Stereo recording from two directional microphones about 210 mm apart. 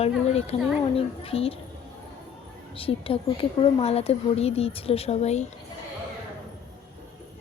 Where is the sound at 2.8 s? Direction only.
25° left (ahead or behind).